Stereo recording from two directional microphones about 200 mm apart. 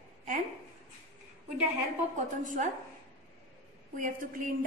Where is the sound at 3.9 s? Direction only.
40° right (ahead or behind).